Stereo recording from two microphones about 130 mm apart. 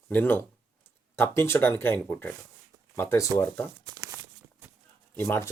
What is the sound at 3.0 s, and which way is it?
Speech, 20° left (ahead or behind).